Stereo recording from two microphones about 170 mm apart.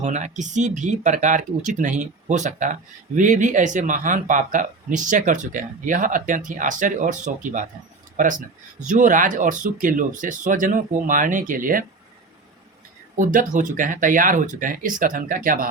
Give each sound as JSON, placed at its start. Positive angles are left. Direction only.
{"t": 0.0, "sound": "speech", "side_deg": -45}
{"t": 13.1, "sound": "speech", "side_deg": -50}